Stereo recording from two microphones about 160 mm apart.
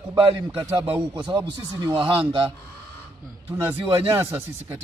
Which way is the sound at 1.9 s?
35° right (ahead or behind).